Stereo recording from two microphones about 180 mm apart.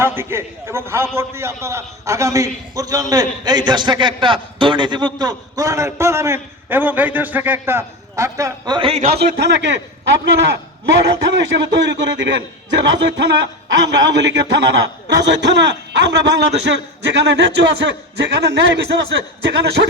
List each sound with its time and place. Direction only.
0.0 s a man's voice: 15° right (ahead or behind); by 9.0 s 30° right (ahead or behind)
9.0 s a man's voice: 65° right (ahead or behind)